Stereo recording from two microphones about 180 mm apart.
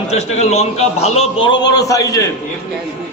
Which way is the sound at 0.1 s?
40° left (ahead or behind).